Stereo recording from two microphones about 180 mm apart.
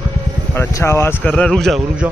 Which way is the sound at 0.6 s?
15° left (ahead or behind).